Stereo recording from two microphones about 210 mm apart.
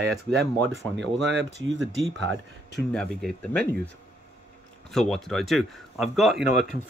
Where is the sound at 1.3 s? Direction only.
55° right (ahead or behind).